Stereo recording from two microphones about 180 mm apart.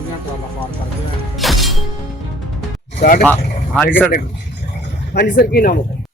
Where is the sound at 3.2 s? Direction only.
10° left (ahead or behind).